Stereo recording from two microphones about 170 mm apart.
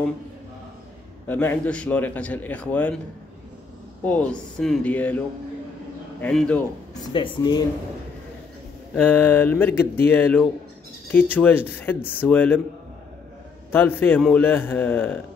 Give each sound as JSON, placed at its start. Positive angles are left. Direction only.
{"t": 1.2, "sound": "a man's voice", "side_deg": 10}
{"t": 4.0, "sound": "a man's voice", "side_deg": 5}
{"t": 6.2, "sound": "a man's voice", "side_deg": 5}
{"t": 6.9, "sound": "speech", "side_deg": 25}
{"t": 8.9, "sound": "a man's voice", "side_deg": 10}
{"t": 13.7, "sound": "a man's voice", "side_deg": 10}